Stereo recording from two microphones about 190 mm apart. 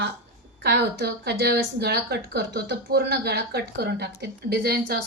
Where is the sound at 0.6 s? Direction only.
65° right (ahead or behind).